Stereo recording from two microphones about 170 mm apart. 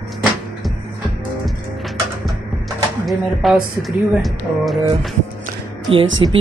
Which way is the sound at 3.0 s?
Centre (ahead or behind).